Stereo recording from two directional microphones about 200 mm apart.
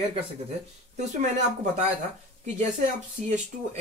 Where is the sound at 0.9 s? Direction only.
35° right (ahead or behind).